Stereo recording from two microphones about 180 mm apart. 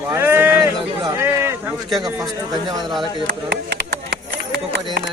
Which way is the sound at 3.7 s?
65° right (ahead or behind).